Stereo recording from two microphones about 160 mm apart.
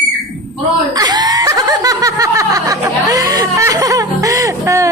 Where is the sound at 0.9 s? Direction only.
25° right (ahead or behind).